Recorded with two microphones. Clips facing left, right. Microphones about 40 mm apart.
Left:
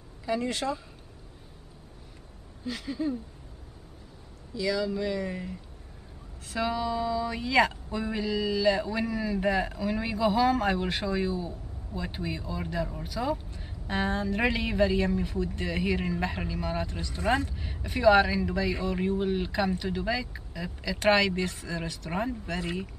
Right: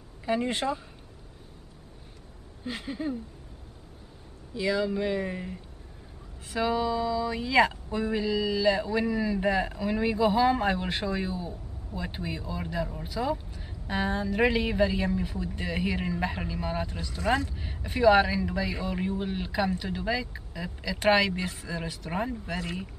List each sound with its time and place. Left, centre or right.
0.2 s speech: right
2.6 s speech: right
4.6 s speech: right
6.6 s speech: centre
7.0 s speech: centre
17.1 s speech: centre
17.5 s speech: centre
22.6 s speech: centre